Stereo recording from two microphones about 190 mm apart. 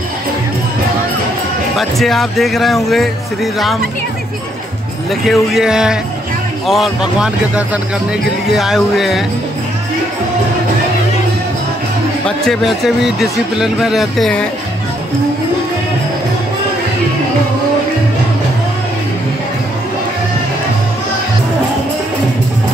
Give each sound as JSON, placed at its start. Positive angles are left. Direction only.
{"t": 1.8, "sound": "a man's voice", "side_deg": 0}
{"t": 5.2, "sound": "a man's voice", "side_deg": 0}
{"t": 12.3, "sound": "a man's voice", "side_deg": 0}